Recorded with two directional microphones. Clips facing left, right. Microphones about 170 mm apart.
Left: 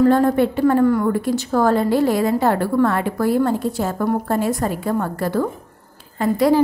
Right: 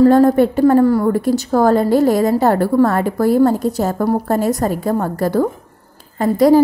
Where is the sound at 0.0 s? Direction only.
40° right (ahead or behind).